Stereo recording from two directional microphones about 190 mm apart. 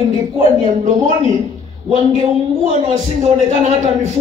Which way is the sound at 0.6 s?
40° right (ahead or behind).